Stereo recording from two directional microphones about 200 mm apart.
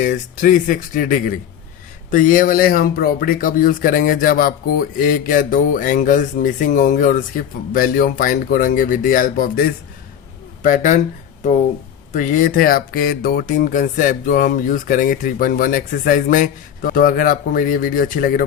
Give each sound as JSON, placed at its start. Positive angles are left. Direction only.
{"t": 0.0, "sound": "speech", "side_deg": 40}
{"t": 12.1, "sound": "speech", "side_deg": 40}